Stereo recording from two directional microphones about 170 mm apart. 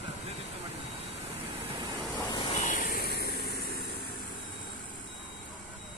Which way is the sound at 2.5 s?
50° left (ahead or behind).